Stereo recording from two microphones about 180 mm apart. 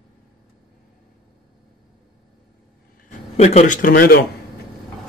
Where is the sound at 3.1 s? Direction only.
40° left (ahead or behind); by 4.2 s 55° left (ahead or behind).